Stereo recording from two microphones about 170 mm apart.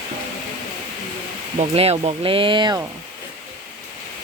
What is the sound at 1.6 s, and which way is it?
Speech, 35° right (ahead or behind).